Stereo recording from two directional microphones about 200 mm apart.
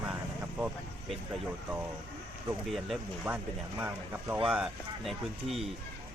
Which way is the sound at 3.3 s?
5° right (ahead or behind).